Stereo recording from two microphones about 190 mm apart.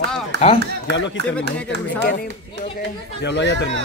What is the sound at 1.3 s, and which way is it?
Speech, 5° left (ahead or behind).